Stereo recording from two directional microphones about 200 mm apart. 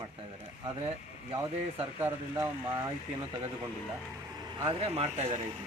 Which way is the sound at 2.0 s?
10° right (ahead or behind).